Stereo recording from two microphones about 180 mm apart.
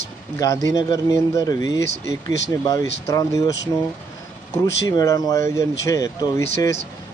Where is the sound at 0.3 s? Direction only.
20° left (ahead or behind).